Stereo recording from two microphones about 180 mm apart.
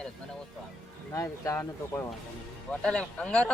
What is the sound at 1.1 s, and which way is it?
Speech, 15° left (ahead or behind).